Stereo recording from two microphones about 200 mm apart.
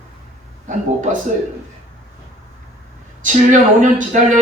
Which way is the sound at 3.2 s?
40° right (ahead or behind).